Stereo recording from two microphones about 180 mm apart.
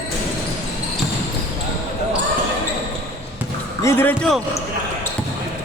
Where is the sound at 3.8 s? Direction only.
15° left (ahead or behind).